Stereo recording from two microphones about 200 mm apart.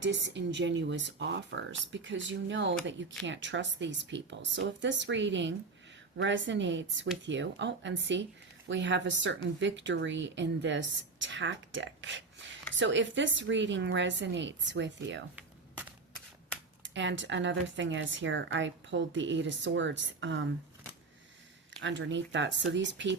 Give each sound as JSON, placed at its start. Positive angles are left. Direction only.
{"t": 0.0, "sound": "a woman's voice", "side_deg": -60}
{"t": 16.8, "sound": "speech", "side_deg": -65}
{"t": 21.8, "sound": "speech", "side_deg": -65}